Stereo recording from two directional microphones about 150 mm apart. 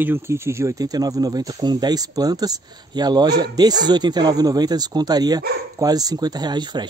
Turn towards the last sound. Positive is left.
turn(degrees=-30)  # may be behind; listen again after turning